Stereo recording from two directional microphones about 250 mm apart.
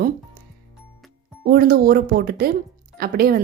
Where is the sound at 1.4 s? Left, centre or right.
Right.